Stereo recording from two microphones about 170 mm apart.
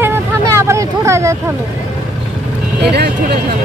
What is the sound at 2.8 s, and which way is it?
Speech, 70° right (ahead or behind).